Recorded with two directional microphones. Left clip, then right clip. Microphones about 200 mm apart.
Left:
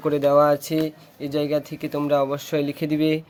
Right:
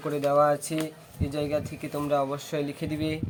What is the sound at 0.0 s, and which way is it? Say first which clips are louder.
Speech: left 6 dB; 45° left (ahead or behind).